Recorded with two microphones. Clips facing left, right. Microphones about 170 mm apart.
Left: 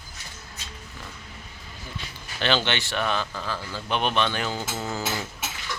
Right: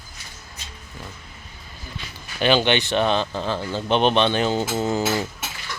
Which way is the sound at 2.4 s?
15° right (ahead or behind).